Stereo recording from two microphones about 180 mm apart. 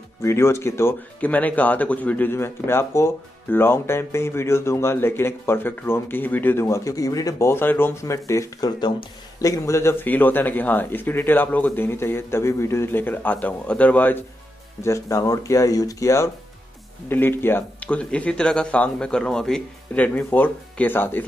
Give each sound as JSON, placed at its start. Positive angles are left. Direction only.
{"t": 0.2, "sound": "speech", "side_deg": 15}